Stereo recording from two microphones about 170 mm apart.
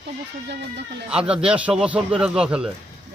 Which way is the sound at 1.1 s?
5° right (ahead or behind).